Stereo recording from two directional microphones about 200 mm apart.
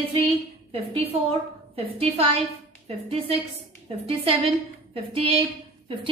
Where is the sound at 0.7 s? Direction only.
30° right (ahead or behind).